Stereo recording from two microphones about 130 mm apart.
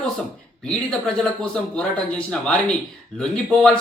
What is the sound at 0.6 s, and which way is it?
Speech, 5° left (ahead or behind).